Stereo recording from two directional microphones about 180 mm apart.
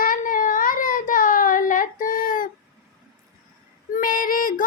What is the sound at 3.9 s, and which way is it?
Female singing, 50° left (ahead or behind).